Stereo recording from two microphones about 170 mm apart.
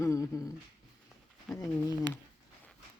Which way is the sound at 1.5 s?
20° left (ahead or behind).